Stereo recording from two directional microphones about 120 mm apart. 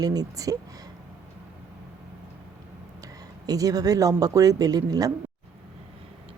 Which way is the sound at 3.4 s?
30° right (ahead or behind).